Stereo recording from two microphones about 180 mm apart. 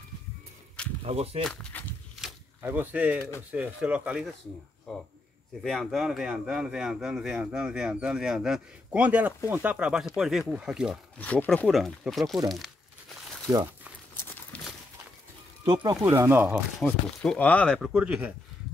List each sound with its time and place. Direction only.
1.0 s speech: 35° right (ahead or behind)
1.4 s speech: 10° left (ahead or behind)
2.6 s speech: 10° right (ahead or behind)
11.1 s speech: 10° left (ahead or behind)
14.5 s a sound: 10° left (ahead or behind)
15.6 s speech: 25° right (ahead or behind)
16.8 s speech: 5° left (ahead or behind)